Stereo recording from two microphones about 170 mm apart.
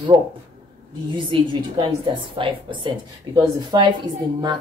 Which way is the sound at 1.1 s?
30° right (ahead or behind).